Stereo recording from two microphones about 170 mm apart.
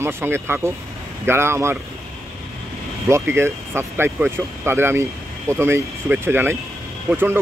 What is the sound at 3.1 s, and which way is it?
Speech, 15° right (ahead or behind).